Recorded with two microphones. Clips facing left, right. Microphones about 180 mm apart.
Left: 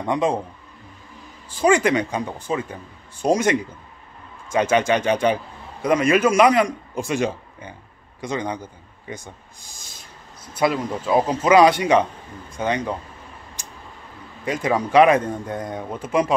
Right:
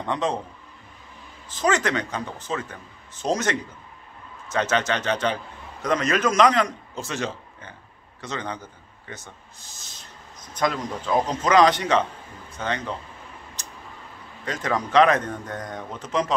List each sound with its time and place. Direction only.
0.0 s a man's voice: 10° left (ahead or behind)
1.5 s a man's voice: 10° left (ahead or behind)
13.6 s a sound: 10° left (ahead or behind)
14.4 s a man's voice: 10° left (ahead or behind)